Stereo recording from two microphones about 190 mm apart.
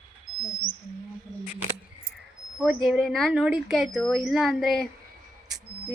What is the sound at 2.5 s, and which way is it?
Speech, 5° right (ahead or behind).